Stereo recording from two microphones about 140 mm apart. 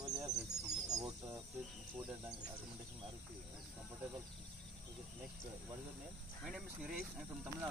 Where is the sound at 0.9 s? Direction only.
15° right (ahead or behind).